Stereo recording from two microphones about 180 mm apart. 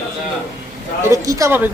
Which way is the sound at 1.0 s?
15° right (ahead or behind).